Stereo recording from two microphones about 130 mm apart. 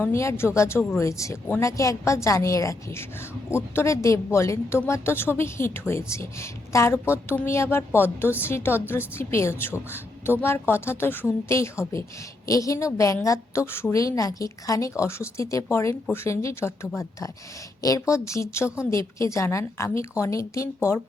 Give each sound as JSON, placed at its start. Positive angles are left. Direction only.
{"t": 0.0, "sound": "a woman's voice", "side_deg": 20}